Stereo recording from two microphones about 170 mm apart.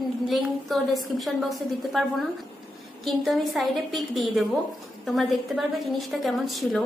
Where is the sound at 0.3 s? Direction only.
Centre (ahead or behind).